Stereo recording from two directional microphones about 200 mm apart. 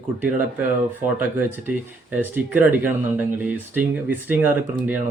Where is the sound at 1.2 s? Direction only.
10° right (ahead or behind).